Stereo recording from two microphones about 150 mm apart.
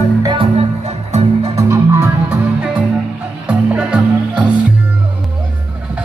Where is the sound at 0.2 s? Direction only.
30° right (ahead or behind).